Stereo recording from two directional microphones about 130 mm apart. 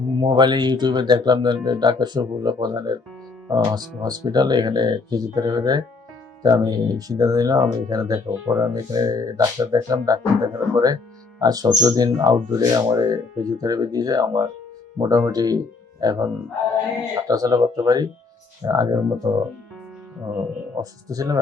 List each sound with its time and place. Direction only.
0.2 s speech: 35° right (ahead or behind); by 8.7 s 20° right (ahead or behind)
8.7 s speech: 30° right (ahead or behind)
17.2 s speech: 30° right (ahead or behind)
21.1 s speech: 25° right (ahead or behind)